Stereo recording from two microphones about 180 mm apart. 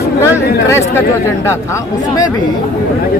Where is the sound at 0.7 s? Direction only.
15° left (ahead or behind).